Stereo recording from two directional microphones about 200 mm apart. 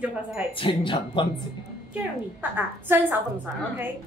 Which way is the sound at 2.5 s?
10° right (ahead or behind).